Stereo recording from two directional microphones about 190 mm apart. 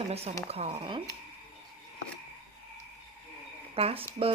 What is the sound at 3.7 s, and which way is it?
Speech, 30° right (ahead or behind).